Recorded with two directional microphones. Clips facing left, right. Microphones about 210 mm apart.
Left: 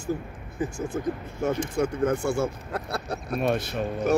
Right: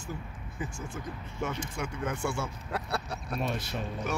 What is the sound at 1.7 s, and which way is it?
Speech, 40° left (ahead or behind).